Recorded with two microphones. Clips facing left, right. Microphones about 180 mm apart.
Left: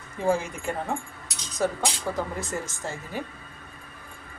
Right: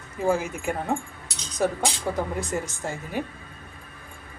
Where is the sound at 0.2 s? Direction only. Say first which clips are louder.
Right 1 dB; 5° right (ahead or behind).